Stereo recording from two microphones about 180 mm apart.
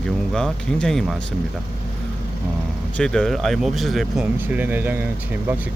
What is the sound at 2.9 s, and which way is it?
Speech, 5° left (ahead or behind).